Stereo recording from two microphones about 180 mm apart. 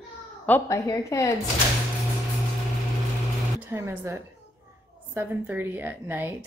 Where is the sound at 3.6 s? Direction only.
15° right (ahead or behind).